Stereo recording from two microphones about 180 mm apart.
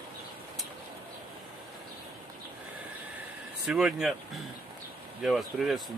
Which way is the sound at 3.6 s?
5° right (ahead or behind).